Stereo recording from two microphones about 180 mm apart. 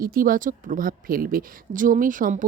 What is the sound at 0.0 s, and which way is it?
Speech, 50° right (ahead or behind).